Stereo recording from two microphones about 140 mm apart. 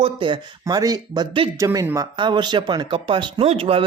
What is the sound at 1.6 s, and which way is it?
Speech, 20° right (ahead or behind).